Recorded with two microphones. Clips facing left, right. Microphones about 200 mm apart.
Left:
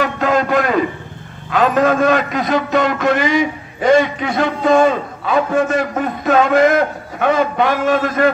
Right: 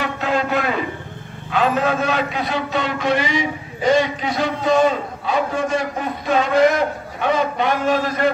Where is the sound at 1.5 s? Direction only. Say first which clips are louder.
Left 5 dB; 45° left (ahead or behind).